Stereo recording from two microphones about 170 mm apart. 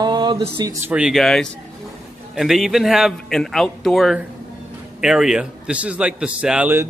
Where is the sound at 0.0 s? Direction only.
25° right (ahead or behind).